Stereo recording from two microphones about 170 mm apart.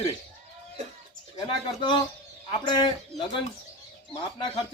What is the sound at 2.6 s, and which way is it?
Speech, 25° left (ahead or behind).